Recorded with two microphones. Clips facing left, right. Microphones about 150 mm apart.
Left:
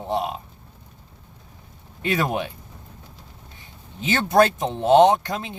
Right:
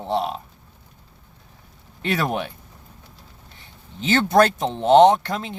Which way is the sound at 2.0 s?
15° left (ahead or behind).